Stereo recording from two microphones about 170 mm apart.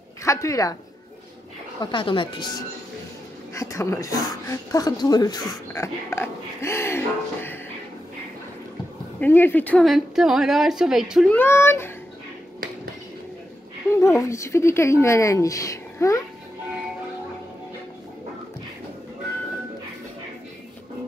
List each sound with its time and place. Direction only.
0.2 s speech: 20° left (ahead or behind)
1.8 s speech: 30° left (ahead or behind)
3.5 s speech: 15° left (ahead or behind)
9.2 s a woman's voice: 10° left (ahead or behind)
11.3 s speech: 15° left (ahead or behind)
13.9 s speech: 15° left (ahead or behind)